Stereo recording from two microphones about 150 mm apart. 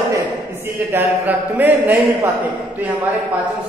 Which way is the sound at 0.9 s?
10° right (ahead or behind).